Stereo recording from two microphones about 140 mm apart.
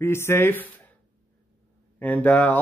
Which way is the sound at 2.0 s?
10° left (ahead or behind).